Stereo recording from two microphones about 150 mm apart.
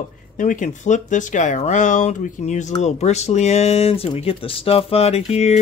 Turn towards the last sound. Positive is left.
turn(degrees=45)  # may be behind; listen again after turning